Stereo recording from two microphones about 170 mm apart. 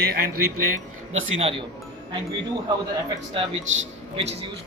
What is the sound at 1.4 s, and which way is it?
Speech, 35° right (ahead or behind).